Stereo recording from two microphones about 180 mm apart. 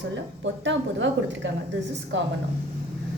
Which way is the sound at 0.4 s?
90° right.